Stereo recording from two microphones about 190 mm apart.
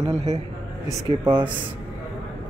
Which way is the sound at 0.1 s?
35° right (ahead or behind).